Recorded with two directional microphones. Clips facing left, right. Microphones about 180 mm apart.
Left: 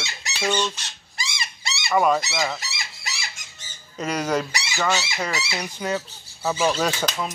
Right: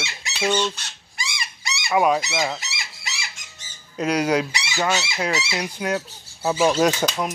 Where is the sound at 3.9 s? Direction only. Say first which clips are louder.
Right 4 dB; 10° right (ahead or behind).